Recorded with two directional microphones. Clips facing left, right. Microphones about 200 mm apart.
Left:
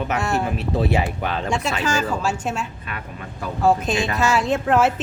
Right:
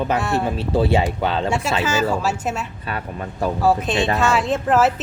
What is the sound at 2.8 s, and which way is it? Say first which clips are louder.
Speech: right 6 dB; 35° right (ahead or behind).